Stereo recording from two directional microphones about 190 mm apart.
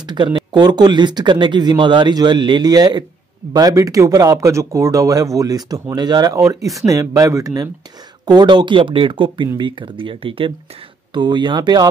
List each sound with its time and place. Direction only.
0.0 s speech: 25° right (ahead or behind)